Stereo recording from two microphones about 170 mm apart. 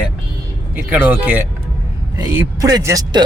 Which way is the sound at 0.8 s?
10° right (ahead or behind).